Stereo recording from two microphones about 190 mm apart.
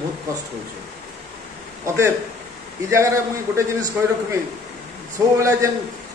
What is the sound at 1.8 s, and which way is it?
A man's voice, 15° right (ahead or behind).